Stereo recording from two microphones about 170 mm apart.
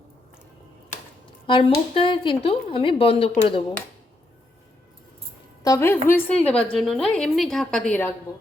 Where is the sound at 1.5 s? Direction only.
30° left (ahead or behind).